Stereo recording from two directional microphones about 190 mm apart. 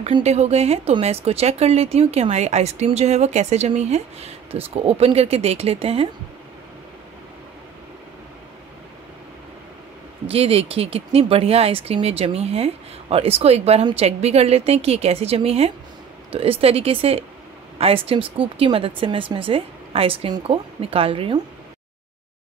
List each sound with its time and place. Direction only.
0.0 s speech: 35° right (ahead or behind)
10.2 s speech: 30° right (ahead or behind)